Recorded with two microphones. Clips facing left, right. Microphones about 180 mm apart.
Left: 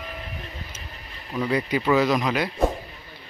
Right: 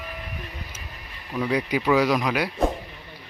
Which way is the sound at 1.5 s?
10° right (ahead or behind).